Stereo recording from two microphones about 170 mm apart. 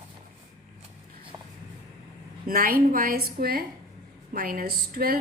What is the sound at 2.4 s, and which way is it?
Speech, 60° right (ahead or behind).